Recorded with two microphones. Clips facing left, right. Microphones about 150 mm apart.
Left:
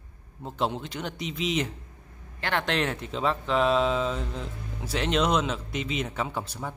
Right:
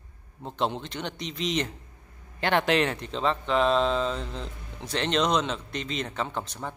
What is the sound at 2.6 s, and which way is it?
Speech, centre (ahead or behind).